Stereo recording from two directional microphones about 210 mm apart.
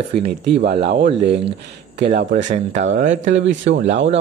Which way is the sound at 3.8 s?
60° right (ahead or behind).